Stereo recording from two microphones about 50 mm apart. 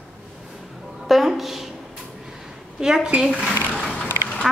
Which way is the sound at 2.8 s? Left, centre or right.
Centre.